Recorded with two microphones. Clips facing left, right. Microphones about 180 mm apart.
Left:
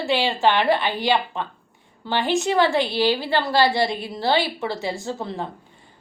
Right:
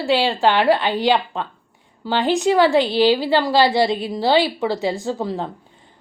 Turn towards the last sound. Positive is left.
turn(degrees=-15)  # may be behind; listen again after turning